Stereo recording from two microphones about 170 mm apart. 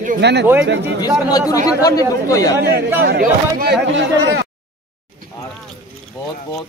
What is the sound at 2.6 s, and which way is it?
Speech, 70° right (ahead or behind).